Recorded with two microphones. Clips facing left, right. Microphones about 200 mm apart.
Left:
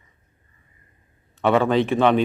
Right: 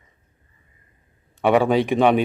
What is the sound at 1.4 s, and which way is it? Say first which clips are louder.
Speech: right 1 dB; 15° right (ahead or behind).